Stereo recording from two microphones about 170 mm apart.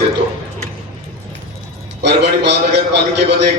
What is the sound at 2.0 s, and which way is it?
Speech, 90° right.